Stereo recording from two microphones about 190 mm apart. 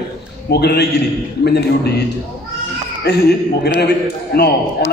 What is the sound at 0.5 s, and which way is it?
A man's voice, 60° left (ahead or behind).